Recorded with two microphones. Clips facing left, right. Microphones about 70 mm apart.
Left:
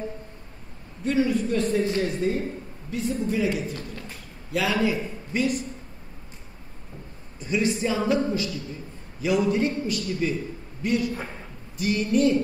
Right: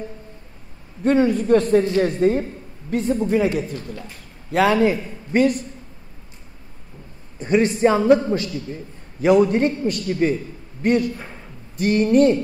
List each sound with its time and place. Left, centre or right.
1.0 s a man's voice: right
7.3 s a man's voice: right